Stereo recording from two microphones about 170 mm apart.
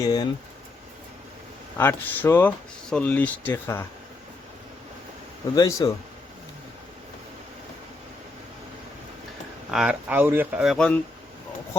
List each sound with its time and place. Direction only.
0.0 s speech: 20° left (ahead or behind)
1.8 s speech: 10° left (ahead or behind)
5.5 s speech: 20° left (ahead or behind)
9.7 s speech: 5° right (ahead or behind)